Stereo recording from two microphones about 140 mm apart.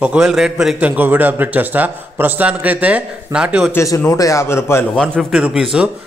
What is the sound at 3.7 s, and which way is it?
A man's voice, 20° left (ahead or behind).